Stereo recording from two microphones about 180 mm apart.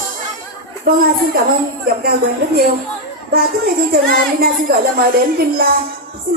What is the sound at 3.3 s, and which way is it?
A woman's voice, 60° right (ahead or behind).